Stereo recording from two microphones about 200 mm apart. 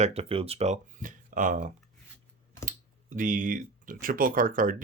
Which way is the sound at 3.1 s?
40° right (ahead or behind).